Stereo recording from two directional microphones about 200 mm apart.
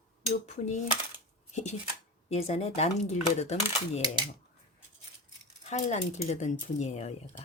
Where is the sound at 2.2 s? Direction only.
30° left (ahead or behind).